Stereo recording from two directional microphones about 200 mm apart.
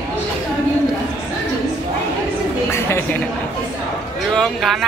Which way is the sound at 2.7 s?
10° left (ahead or behind).